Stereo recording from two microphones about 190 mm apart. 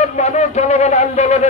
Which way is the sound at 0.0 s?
40° left (ahead or behind).